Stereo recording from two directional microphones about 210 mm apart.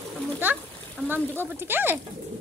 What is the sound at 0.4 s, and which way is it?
Speech, 10° right (ahead or behind).